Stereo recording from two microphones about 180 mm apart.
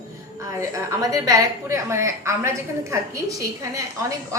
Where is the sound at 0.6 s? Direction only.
15° right (ahead or behind).